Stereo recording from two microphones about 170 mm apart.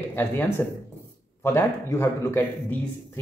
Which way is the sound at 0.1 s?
10° left (ahead or behind).